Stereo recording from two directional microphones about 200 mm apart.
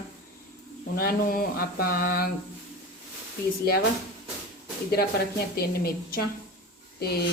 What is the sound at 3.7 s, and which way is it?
Speech, 50° left (ahead or behind).